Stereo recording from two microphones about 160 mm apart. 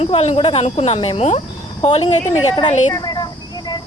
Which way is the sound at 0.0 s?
40° left (ahead or behind).